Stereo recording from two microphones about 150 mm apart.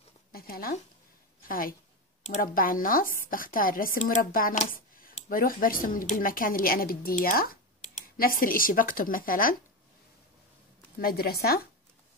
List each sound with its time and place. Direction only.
0.3 s a sound: 80° left
1.5 s speech: 70° left (ahead or behind)
11.0 s speech: 90° left